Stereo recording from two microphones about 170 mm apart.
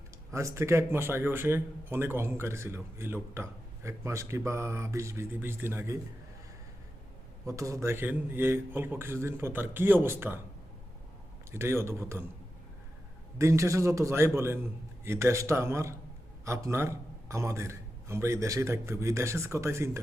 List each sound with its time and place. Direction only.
0.3 s speech: 15° right (ahead or behind)
7.4 s speech: 20° right (ahead or behind)
11.5 s speech: 15° right (ahead or behind)
13.4 s speech: 15° right (ahead or behind)